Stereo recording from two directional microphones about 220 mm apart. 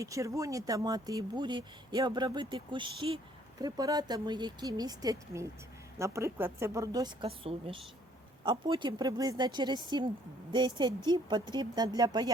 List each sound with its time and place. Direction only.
0.0 s a woman's voice: 15° right (ahead or behind)